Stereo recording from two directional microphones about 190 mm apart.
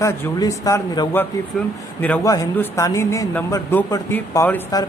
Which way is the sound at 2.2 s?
20° left (ahead or behind).